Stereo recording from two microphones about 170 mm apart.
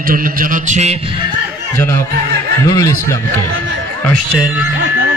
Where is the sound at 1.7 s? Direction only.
15° left (ahead or behind).